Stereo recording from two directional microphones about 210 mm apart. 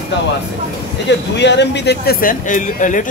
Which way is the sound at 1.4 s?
55° left (ahead or behind).